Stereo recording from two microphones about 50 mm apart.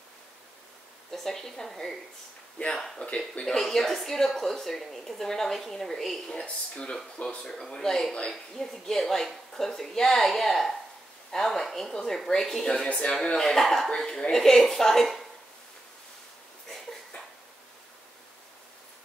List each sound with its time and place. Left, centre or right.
1.1 s a woman's voice: centre
6.3 s speech: left
7.4 s a woman's voice: centre
12.8 s a woman's voice: left; by 15.2 s centre